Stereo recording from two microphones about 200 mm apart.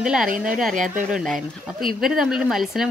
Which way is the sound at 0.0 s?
5° right (ahead or behind).